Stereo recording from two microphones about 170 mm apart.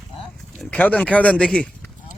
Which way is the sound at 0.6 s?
10° left (ahead or behind).